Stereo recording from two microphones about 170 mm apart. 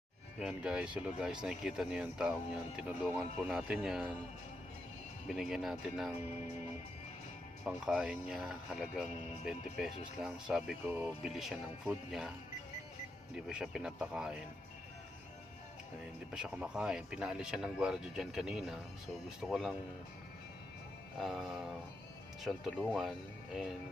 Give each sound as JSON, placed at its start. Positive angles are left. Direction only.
{"t": 0.3, "sound": "speech", "side_deg": -5}
{"t": 5.3, "sound": "speech", "side_deg": -5}
{"t": 7.6, "sound": "speech", "side_deg": -5}
{"t": 13.3, "sound": "speech", "side_deg": -5}
{"t": 16.3, "sound": "speech", "side_deg": -5}
{"t": 21.2, "sound": "speech", "side_deg": 0}